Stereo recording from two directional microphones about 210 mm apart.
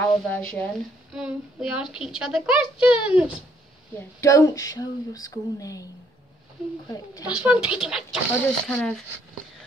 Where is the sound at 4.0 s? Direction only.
15° left (ahead or behind).